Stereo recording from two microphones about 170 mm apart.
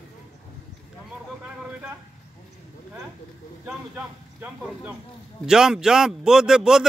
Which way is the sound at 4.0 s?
10° right (ahead or behind).